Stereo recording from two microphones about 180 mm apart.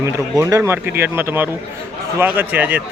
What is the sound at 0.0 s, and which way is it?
Speech, 15° right (ahead or behind).